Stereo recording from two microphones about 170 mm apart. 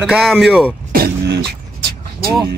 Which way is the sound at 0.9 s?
60° right (ahead or behind).